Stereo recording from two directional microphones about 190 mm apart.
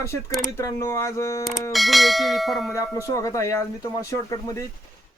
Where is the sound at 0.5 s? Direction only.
15° left (ahead or behind).